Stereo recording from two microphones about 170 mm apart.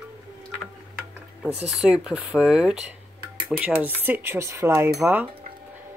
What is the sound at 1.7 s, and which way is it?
Speech, 5° right (ahead or behind).